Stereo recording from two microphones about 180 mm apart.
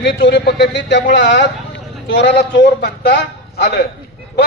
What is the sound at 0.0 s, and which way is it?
A man's voice, 70° left (ahead or behind).